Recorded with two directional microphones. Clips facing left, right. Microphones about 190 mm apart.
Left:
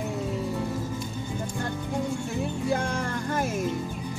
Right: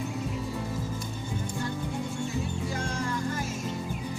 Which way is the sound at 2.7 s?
60° left (ahead or behind).